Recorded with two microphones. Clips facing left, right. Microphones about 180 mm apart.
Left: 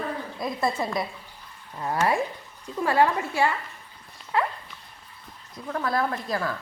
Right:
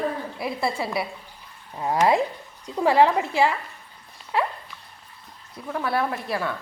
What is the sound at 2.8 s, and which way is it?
Speech, 90° right.